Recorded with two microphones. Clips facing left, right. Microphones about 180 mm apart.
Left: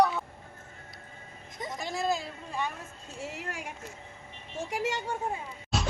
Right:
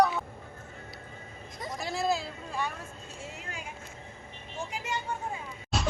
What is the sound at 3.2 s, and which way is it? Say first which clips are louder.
Speech: left 5 dB; 75° left (ahead or behind).